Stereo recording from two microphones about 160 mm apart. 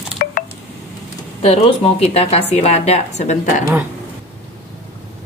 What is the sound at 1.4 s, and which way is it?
A woman's voice, 40° left (ahead or behind).